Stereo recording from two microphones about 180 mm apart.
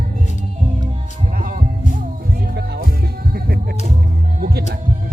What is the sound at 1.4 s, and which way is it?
Music, 50° right (ahead or behind).